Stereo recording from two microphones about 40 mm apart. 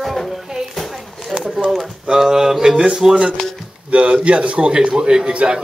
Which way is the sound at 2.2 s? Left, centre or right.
Centre.